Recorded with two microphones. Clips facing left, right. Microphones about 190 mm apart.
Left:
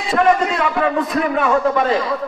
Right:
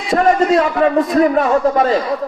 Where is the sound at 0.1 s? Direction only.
40° right (ahead or behind).